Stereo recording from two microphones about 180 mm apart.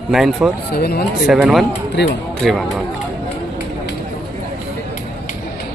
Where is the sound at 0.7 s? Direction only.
60° left (ahead or behind).